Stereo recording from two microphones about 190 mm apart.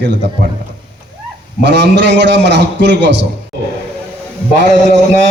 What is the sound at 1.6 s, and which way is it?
A man's voice, 65° right (ahead or behind).